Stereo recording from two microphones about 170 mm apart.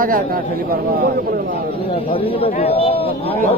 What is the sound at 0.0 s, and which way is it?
A man's voice, 55° right (ahead or behind).